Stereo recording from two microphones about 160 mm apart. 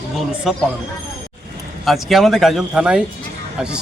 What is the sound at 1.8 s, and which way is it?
Speech, centre (ahead or behind).